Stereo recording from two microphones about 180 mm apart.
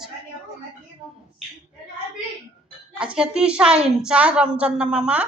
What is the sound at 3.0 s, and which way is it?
A woman's voice, 5° right (ahead or behind).